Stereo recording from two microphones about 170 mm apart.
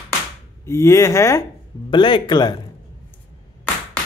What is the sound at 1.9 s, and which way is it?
Speech, 30° left (ahead or behind).